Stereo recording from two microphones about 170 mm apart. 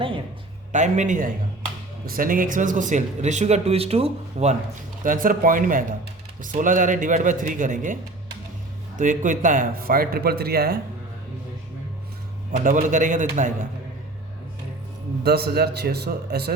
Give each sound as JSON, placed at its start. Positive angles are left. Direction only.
{"t": 0.7, "sound": "a man's voice", "side_deg": -45}
{"t": 9.0, "sound": "a man's voice", "side_deg": -50}
{"t": 12.5, "sound": "a man's voice", "side_deg": -50}
{"t": 15.2, "sound": "speech", "side_deg": -70}